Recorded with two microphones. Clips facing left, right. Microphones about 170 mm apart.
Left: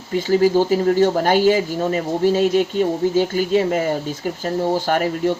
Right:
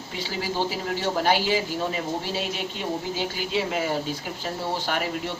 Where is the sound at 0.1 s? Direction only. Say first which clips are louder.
Left 15 dB; 45° left (ahead or behind).